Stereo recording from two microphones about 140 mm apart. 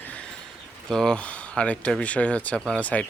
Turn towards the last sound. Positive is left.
turn(degrees=10)  # may be behind; listen again after turning